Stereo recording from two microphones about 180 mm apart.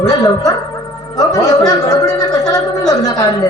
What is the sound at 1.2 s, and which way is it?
Speech, 20° left (ahead or behind).